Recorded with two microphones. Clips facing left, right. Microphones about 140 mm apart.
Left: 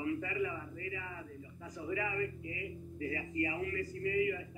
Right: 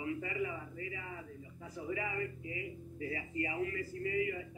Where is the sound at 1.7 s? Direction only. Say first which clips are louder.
Left 1 dB; 30° right (ahead or behind).